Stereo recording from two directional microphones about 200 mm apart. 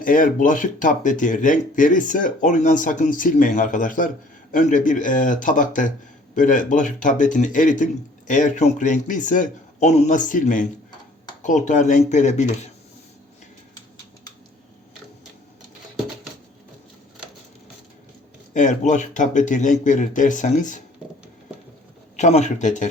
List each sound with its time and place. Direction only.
0.0 s speech: 40° left (ahead or behind)
18.5 s speech: 40° left (ahead or behind)
22.1 s speech: 35° left (ahead or behind)